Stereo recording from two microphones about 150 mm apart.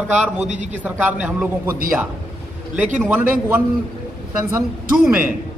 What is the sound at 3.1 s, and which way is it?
Speech, 10° right (ahead or behind).